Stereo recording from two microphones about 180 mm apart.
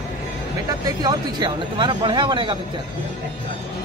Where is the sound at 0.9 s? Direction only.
20° right (ahead or behind).